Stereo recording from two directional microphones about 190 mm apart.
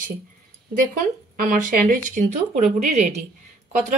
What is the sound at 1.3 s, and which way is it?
Speech, 45° right (ahead or behind).